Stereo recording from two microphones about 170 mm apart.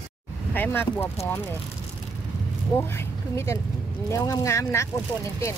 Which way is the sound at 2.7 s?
15° left (ahead or behind).